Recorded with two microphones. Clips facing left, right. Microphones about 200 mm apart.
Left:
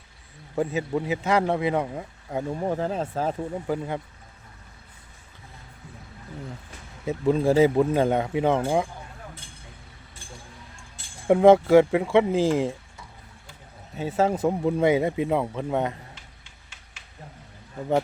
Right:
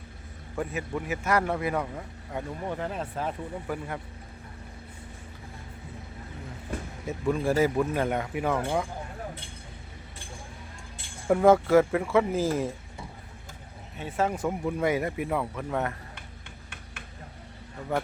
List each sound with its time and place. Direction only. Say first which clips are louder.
0.5 s speech: left 6 dB; 25° left (ahead or behind)
6.7 s a sound: right 12 dB; 55° right (ahead or behind)
7.3 s speech: left 5 dB; 25° left (ahead or behind)
11.3 s speech: left 4 dB; 25° left (ahead or behind)
13.9 s speech: left 5 dB; 30° left (ahead or behind)